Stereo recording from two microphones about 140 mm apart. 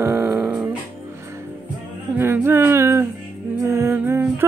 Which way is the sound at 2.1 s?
15° right (ahead or behind).